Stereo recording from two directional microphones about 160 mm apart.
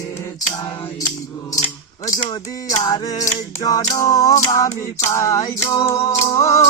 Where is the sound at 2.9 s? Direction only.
25° left (ahead or behind).